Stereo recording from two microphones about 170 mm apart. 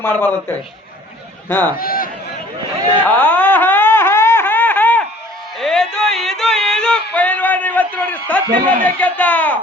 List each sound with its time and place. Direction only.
0.0 s speech: 10° left (ahead or behind)
1.7 s speech: 60° left (ahead or behind)
3.0 s a sound: 10° left (ahead or behind)
5.5 s music: centre (ahead or behind)
8.8 s speech: 10° left (ahead or behind)